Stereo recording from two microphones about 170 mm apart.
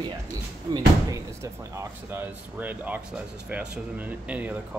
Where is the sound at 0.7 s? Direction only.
25° right (ahead or behind).